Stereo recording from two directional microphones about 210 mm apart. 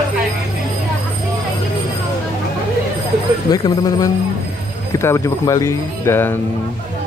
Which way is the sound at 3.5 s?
20° left (ahead or behind).